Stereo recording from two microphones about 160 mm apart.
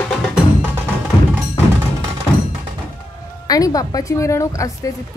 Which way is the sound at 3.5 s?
25° left (ahead or behind).